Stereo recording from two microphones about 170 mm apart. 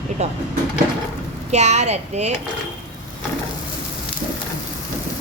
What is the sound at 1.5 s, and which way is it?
Speech, 40° right (ahead or behind).